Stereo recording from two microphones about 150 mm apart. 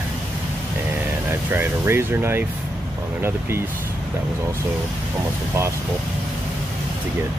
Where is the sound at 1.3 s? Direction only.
15° right (ahead or behind).